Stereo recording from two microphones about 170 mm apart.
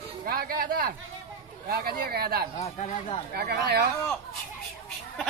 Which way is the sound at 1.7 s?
65° right (ahead or behind).